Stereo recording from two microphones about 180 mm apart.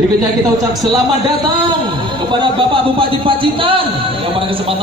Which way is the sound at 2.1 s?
30° right (ahead or behind).